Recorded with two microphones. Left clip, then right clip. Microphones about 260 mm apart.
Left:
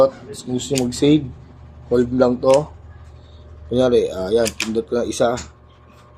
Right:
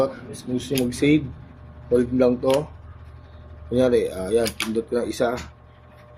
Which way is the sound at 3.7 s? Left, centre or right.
Centre.